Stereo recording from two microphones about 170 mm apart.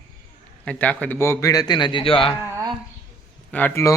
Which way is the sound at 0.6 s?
5° left (ahead or behind).